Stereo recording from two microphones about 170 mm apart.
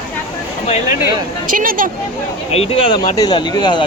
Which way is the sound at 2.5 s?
35° left (ahead or behind).